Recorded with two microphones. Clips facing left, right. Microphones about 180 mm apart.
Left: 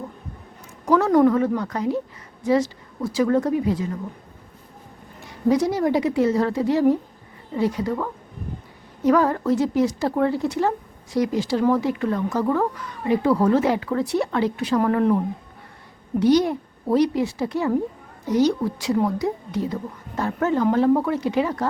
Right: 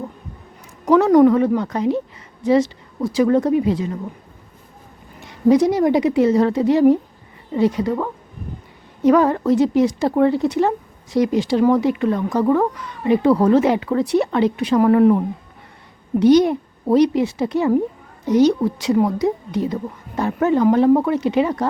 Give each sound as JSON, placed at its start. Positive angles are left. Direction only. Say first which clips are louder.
{"t": 0.9, "sound": "a woman's voice", "louder": "right 5 dB", "side_deg": -20}
{"t": 5.2, "sound": "a woman's voice", "louder": "right 5 dB", "side_deg": -20}
{"t": 16.2, "sound": "a woman's voice", "louder": "right 5 dB", "side_deg": -20}